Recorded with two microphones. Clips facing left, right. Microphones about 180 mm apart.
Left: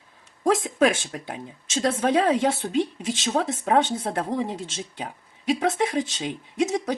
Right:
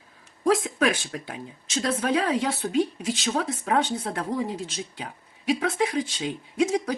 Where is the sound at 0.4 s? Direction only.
25° left (ahead or behind).